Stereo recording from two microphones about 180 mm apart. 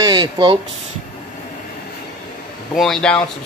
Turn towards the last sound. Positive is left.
turn(degrees=5)  # may be behind; listen again after turning